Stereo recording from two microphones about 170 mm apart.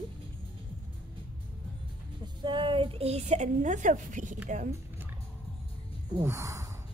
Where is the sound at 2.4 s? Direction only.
30° right (ahead or behind); by 4.3 s 50° right (ahead or behind).